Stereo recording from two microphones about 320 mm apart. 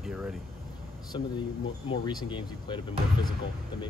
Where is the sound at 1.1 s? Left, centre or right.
Centre.